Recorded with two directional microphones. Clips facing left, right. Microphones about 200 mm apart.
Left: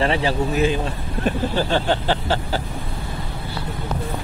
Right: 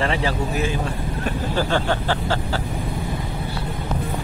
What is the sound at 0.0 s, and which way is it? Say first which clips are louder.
Speech: left 2 dB; 15° left (ahead or behind).